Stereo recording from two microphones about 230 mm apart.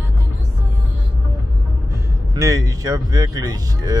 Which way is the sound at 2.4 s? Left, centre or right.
Centre.